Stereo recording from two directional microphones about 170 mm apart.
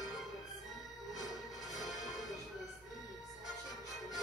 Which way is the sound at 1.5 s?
Centre (ahead or behind).